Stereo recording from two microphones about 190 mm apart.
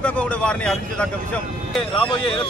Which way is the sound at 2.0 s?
25° left (ahead or behind).